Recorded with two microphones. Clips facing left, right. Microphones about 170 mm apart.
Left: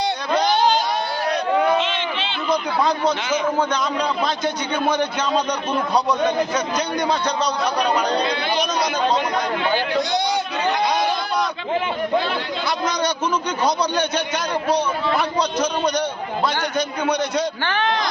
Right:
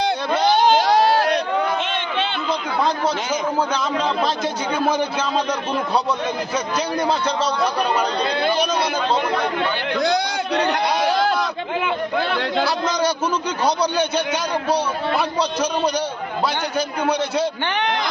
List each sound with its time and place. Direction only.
0.9 s crowd: 90° right
1.8 s a sound: 55° right (ahead or behind)
10.5 s speech: 70° right (ahead or behind)
17.7 s speech: 20° right (ahead or behind)